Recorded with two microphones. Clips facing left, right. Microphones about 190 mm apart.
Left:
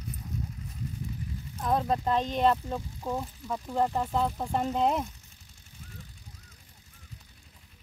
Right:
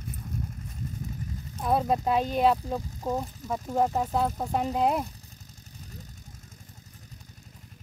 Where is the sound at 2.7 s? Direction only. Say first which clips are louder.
Right 3 dB; 40° right (ahead or behind).